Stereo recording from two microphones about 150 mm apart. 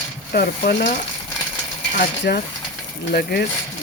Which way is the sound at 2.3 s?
90° left.